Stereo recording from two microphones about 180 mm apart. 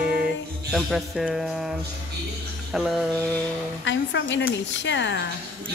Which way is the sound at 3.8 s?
90° left.